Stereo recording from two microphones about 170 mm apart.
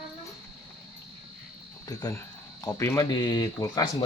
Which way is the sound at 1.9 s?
20° left (ahead or behind).